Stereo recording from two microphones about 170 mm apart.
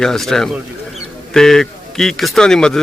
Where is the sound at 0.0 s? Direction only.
Centre (ahead or behind).